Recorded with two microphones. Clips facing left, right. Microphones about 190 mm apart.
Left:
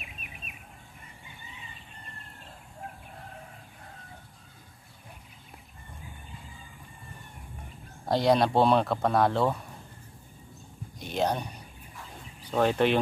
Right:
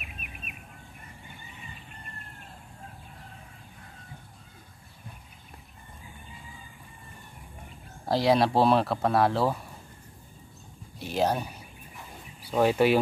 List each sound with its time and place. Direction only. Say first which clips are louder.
0.0 s bird: right 2 dB; 55° right (ahead or behind)
8.0 s speech: even; centre (ahead or behind)
11.0 s a sound: right 2 dB; 5° right (ahead or behind)